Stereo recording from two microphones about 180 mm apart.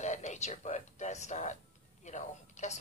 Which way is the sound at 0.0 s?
40° left (ahead or behind).